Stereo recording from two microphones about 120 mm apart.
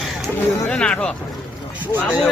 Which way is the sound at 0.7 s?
10° left (ahead or behind).